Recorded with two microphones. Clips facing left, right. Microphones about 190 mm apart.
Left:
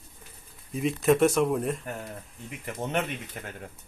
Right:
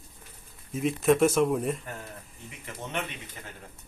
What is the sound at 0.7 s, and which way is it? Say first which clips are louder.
Speech: even; centre (ahead or behind).